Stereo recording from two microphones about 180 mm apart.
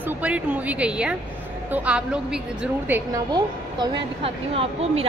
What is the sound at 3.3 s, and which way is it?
Speech, 30° right (ahead or behind).